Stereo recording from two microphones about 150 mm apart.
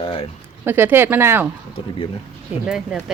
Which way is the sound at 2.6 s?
5° right (ahead or behind).